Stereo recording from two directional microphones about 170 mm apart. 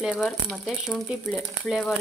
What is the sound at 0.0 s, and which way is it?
Speech, 5° right (ahead or behind).